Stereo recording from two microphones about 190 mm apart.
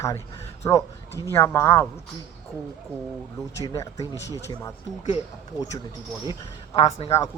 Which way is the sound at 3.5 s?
15° left (ahead or behind).